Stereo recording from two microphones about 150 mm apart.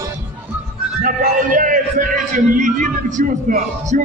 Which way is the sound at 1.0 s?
60° right (ahead or behind).